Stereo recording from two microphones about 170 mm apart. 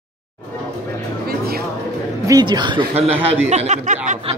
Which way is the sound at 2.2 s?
25° right (ahead or behind).